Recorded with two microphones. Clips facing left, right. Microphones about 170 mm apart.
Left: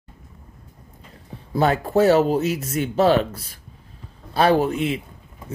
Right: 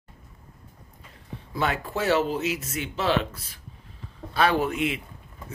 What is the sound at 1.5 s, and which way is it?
Speech, 40° left (ahead or behind).